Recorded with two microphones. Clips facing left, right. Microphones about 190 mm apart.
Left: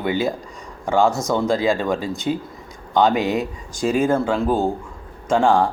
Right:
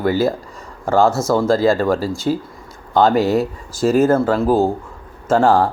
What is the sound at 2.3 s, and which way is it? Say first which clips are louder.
Speech: right 3 dB; 40° right (ahead or behind).